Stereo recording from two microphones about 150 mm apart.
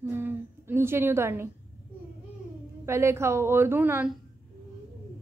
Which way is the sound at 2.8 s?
15° right (ahead or behind).